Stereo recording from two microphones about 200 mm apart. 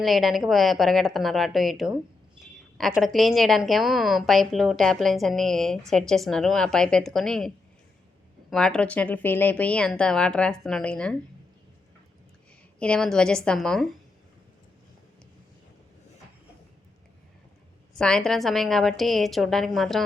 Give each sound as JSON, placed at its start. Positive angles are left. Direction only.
{"t": 0.0, "sound": "a woman's voice", "side_deg": 0}
{"t": 12.8, "sound": "a woman's voice", "side_deg": 5}
{"t": 17.9, "sound": "a woman's voice", "side_deg": 5}